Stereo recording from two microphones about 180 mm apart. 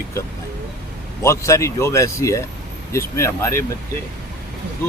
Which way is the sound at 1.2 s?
15° left (ahead or behind).